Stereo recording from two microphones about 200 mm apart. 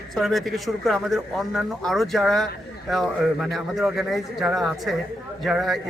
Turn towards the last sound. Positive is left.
turn(degrees=0)  # may be behind; listen again after turning